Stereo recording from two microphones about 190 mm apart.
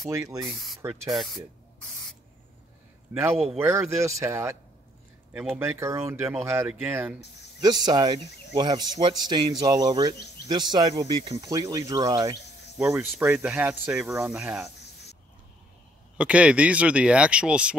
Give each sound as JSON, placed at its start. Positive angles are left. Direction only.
{"t": 0.1, "sound": "speech", "side_deg": -15}
{"t": 0.5, "sound": "speech", "side_deg": 0}
{"t": 3.5, "sound": "speech", "side_deg": -15}
{"t": 7.6, "sound": "speech", "side_deg": -20}
{"t": 13.0, "sound": "speech", "side_deg": -5}
{"t": 16.2, "sound": "speech", "side_deg": -5}